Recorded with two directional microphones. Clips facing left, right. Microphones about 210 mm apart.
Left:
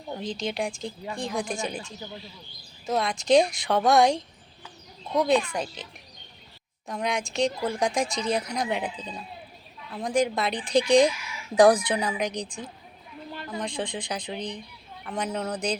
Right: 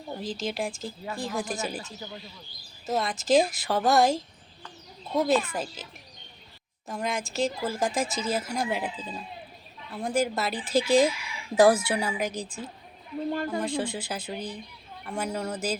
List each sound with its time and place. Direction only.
0.2 s speech: 5° right (ahead or behind)
13.3 s a sound: 45° right (ahead or behind)
13.6 s speech: 5° right (ahead or behind)